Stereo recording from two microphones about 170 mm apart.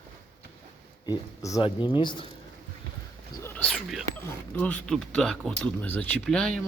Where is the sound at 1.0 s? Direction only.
20° left (ahead or behind).